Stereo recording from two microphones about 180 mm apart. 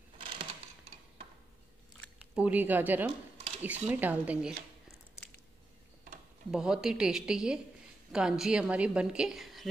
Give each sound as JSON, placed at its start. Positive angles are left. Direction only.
{"t": 2.1, "sound": "speech", "side_deg": -5}
{"t": 3.1, "sound": "a sound", "side_deg": -35}
{"t": 3.6, "sound": "speech", "side_deg": -10}
{"t": 6.5, "sound": "a woman's voice", "side_deg": -5}